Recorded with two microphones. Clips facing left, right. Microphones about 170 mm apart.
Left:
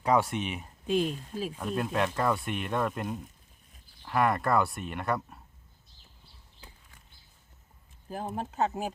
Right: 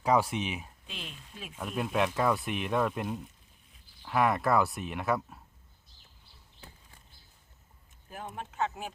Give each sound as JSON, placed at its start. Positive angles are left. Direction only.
{"t": 0.0, "sound": "speech", "side_deg": 0}
{"t": 0.9, "sound": "speech", "side_deg": 45}
{"t": 1.5, "sound": "speech", "side_deg": 0}
{"t": 8.1, "sound": "speech", "side_deg": 35}